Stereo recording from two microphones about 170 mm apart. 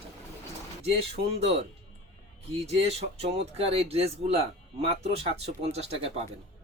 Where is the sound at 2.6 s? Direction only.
35° right (ahead or behind).